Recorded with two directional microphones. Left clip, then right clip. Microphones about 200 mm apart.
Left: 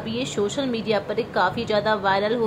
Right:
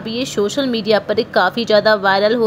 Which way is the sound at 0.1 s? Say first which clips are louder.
Right 7 dB; 20° right (ahead or behind).